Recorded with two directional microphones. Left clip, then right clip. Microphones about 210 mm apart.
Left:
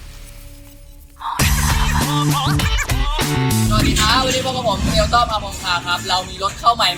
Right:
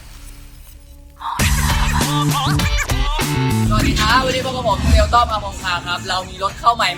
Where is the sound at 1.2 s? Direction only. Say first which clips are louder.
Even; centre (ahead or behind).